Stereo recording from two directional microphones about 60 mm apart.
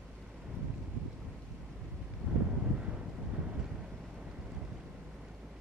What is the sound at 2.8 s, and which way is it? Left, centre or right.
Vehicle, centre.